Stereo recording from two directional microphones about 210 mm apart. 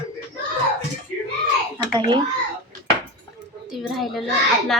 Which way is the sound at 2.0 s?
20° right (ahead or behind).